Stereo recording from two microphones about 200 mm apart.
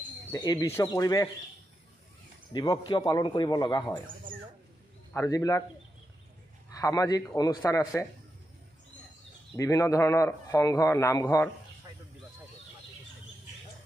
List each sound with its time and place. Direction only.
0.3 s a man's voice: 20° left (ahead or behind)
2.5 s a man's voice: 20° left (ahead or behind)
5.1 s a man's voice: 15° left (ahead or behind)
6.8 s a man's voice: 15° left (ahead or behind)
9.6 s a man's voice: 15° left (ahead or behind)